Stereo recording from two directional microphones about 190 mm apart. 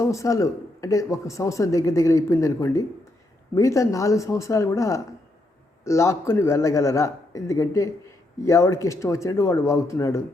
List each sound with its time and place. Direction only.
0.0 s speech: 15° left (ahead or behind)